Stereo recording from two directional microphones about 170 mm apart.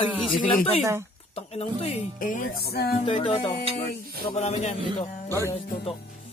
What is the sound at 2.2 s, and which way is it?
Speech, 50° left (ahead or behind).